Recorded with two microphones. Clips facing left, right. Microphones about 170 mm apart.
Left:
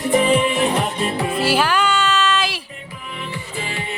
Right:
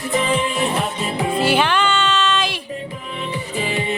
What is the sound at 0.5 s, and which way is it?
Music, centre (ahead or behind).